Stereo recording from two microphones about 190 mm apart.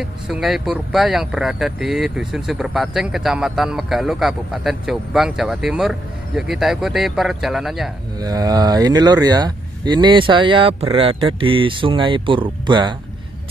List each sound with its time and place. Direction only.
0.0 s speech: centre (ahead or behind)
8.2 s speech: 20° right (ahead or behind)